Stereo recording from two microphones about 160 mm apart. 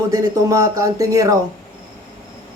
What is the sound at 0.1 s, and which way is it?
Speech, 20° right (ahead or behind).